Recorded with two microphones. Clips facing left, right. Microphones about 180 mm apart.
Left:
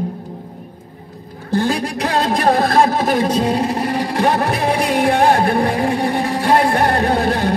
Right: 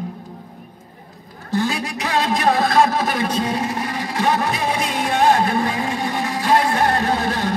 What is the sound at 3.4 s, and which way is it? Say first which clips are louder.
Music: left 5 dB; 65° left (ahead or behind).